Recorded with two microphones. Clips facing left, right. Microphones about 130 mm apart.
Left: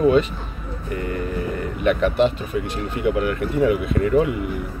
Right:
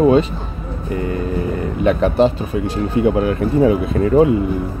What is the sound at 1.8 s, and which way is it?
Speech, 35° right (ahead or behind).